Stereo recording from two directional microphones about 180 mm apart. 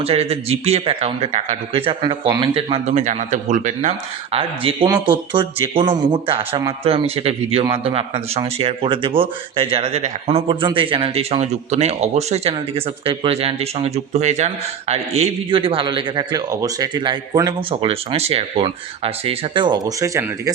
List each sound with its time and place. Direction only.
0.0 s speech: 35° right (ahead or behind); by 20.5 s 15° right (ahead or behind)